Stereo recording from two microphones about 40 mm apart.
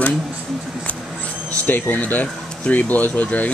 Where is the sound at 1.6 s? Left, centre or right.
Left.